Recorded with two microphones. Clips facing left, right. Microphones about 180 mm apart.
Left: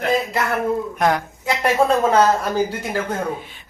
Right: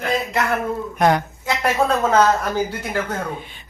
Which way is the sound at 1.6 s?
10° left (ahead or behind).